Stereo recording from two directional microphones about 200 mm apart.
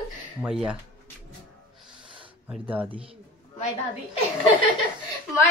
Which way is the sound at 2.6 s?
10° right (ahead or behind).